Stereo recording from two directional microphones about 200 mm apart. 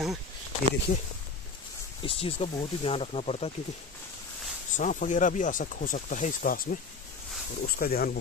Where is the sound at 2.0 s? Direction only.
30° left (ahead or behind).